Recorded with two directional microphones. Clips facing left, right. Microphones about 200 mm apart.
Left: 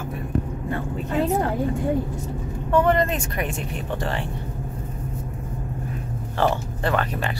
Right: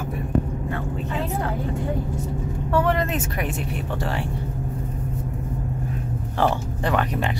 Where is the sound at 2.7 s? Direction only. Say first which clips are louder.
Left 3 dB; 5° right (ahead or behind).